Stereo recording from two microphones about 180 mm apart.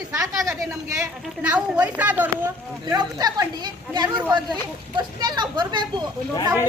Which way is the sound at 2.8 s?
20° right (ahead or behind).